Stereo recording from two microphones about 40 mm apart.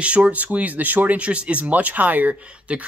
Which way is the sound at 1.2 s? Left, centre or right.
Right.